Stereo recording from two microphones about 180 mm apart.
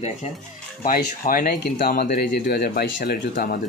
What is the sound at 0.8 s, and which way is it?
Speech, 55° left (ahead or behind).